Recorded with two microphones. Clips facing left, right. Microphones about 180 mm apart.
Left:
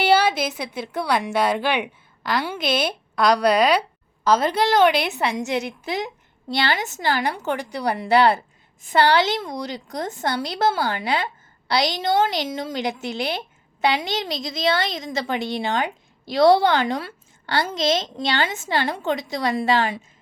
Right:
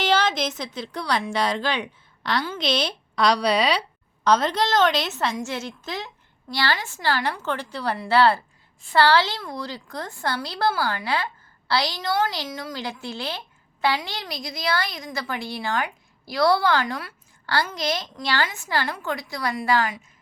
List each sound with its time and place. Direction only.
0.0 s a woman's voice: 10° left (ahead or behind); by 20.0 s 25° left (ahead or behind)